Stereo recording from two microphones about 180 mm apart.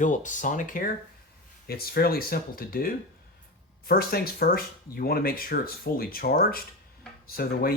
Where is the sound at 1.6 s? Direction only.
60° left (ahead or behind).